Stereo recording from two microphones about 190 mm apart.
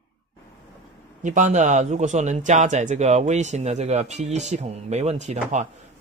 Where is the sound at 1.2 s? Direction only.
40° right (ahead or behind).